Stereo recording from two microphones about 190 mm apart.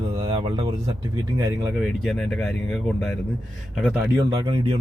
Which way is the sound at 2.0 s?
Centre (ahead or behind).